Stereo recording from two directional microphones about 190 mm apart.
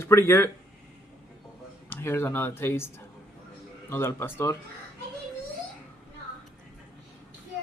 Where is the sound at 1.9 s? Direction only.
10° left (ahead or behind).